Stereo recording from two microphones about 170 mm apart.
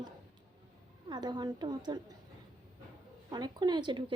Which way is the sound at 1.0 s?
25° right (ahead or behind).